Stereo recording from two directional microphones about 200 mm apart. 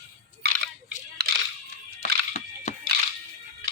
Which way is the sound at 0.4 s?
55° right (ahead or behind).